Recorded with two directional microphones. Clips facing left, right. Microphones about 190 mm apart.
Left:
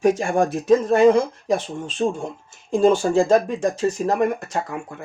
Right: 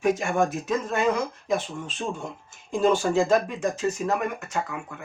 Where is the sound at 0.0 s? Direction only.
30° left (ahead or behind).